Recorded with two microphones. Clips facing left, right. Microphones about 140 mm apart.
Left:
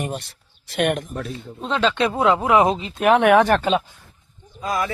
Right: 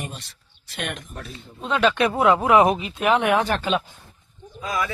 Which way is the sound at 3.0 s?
65° left (ahead or behind).